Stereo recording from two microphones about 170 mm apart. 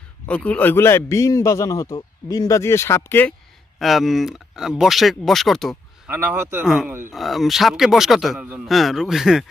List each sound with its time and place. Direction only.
0.3 s a man's voice: 10° left (ahead or behind)
3.8 s a man's voice: centre (ahead or behind)
6.0 s a man's voice: 10° right (ahead or behind)